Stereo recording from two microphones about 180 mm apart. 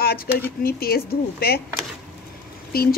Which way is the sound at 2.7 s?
55° left (ahead or behind).